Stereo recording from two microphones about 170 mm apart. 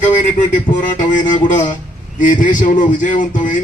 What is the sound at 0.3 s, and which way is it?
A man's voice, 50° left (ahead or behind).